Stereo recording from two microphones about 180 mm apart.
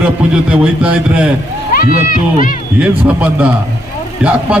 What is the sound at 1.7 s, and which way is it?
Speech, 50° left (ahead or behind).